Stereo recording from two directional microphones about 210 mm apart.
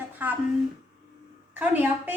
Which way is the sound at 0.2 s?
10° right (ahead or behind).